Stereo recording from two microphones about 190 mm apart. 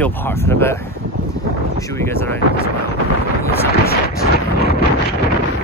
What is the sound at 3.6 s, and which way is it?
Vehicle, 55° left (ahead or behind).